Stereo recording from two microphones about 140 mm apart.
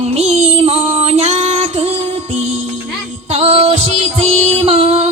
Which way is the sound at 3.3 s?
45° right (ahead or behind).